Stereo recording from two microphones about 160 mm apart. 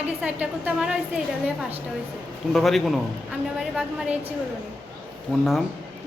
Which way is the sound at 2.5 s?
Centre (ahead or behind).